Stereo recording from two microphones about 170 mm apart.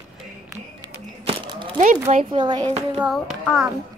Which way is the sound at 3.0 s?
5° right (ahead or behind).